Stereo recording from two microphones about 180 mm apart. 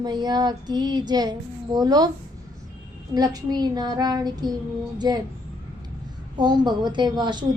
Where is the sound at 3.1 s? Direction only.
20° right (ahead or behind).